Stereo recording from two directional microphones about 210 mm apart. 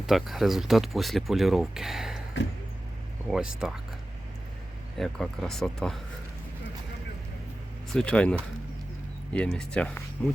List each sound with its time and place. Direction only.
0.0 s speech: centre (ahead or behind)
2.4 s a sound: 60° left (ahead or behind)
3.2 s speech: 5° right (ahead or behind)
4.9 s speech: centre (ahead or behind)
7.9 s speech: 5° left (ahead or behind)